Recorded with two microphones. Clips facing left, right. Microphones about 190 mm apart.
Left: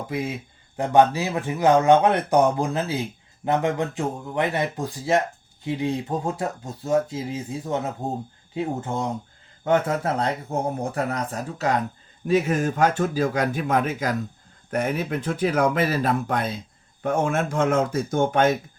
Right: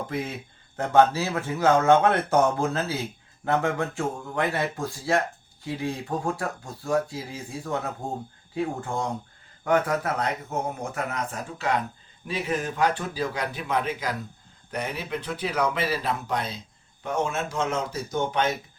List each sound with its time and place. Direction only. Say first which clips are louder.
0.1 s speech: left 3 dB; 10° left (ahead or behind); by 18.6 s 50° left (ahead or behind)